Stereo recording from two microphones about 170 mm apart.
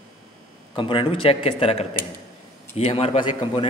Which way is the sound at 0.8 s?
30° left (ahead or behind).